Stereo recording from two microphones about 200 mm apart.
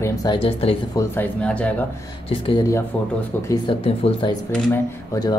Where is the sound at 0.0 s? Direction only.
15° left (ahead or behind).